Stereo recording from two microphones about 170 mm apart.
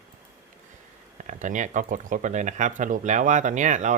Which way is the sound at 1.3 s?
45° right (ahead or behind).